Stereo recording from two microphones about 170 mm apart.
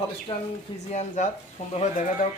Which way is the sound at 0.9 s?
45° left (ahead or behind).